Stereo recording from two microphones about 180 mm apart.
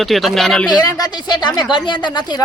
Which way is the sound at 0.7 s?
20° left (ahead or behind).